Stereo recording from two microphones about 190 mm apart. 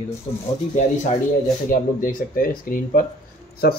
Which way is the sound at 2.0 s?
45° left (ahead or behind).